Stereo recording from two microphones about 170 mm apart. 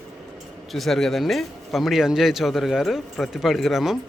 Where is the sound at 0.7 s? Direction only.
Centre (ahead or behind).